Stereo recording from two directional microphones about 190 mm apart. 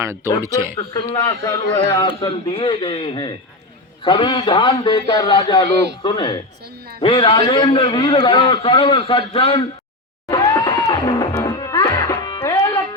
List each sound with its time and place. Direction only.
0.8 s a man's voice: 20° left (ahead or behind)
10.2 s music: 15° left (ahead or behind)